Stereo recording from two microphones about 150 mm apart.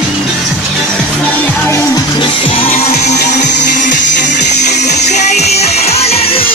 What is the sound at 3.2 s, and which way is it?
Music, 55° left (ahead or behind).